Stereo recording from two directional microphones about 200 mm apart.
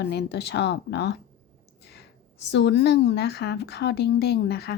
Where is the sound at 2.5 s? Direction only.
60° left (ahead or behind).